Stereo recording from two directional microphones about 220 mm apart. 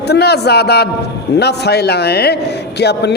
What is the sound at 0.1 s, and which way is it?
Speech, 50° left (ahead or behind).